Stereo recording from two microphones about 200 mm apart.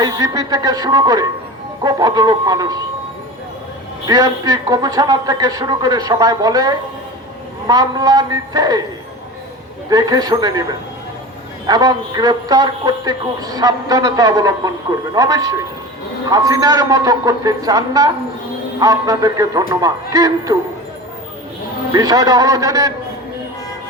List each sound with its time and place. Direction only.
0.0 s a man's voice: 20° right (ahead or behind)
4.0 s a man's voice: 20° right (ahead or behind)
9.9 s a man's voice: 20° right (ahead or behind)
21.9 s a man's voice: 20° right (ahead or behind)